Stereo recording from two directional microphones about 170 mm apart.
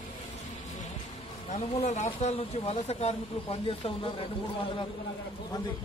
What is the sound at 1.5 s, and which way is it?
Speech, 40° left (ahead or behind).